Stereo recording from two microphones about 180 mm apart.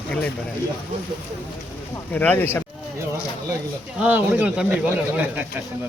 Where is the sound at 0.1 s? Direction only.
5° left (ahead or behind).